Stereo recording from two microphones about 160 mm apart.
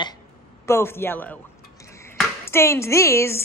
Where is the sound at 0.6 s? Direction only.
15° left (ahead or behind).